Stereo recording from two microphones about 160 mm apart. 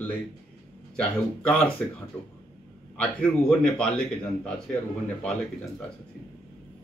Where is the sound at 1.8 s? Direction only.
5° left (ahead or behind).